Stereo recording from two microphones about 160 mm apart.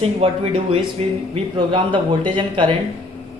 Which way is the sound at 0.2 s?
35° right (ahead or behind).